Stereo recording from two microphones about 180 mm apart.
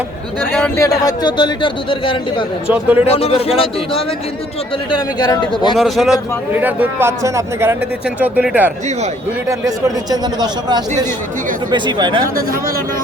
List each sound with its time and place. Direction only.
0.8 s speech: 20° left (ahead or behind)
2.6 s a man's voice: 10° right (ahead or behind)
3.1 s a man's voice: 35° left (ahead or behind)
4.9 s speech: 25° left (ahead or behind)
5.7 s a man's voice: centre (ahead or behind)
9.5 s speech: 20° right (ahead or behind)
12.4 s speech: 55° right (ahead or behind)